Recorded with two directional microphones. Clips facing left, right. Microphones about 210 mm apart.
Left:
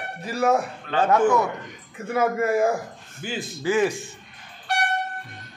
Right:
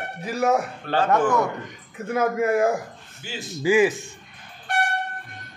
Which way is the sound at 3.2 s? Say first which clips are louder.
Left 5 dB; 55° left (ahead or behind).